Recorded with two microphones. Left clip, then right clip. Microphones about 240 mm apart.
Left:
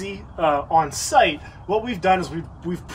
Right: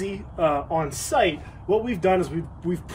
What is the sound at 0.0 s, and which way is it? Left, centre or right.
Speech, centre.